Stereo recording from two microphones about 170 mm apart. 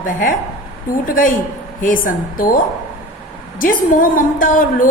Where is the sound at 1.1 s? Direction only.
55° left (ahead or behind).